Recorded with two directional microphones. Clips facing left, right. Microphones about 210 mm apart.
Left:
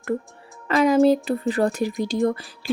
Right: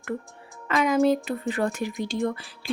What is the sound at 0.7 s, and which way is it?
A woman's voice, 35° left (ahead or behind).